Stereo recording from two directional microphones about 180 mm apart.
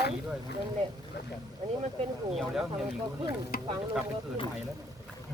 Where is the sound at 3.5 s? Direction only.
50° left (ahead or behind).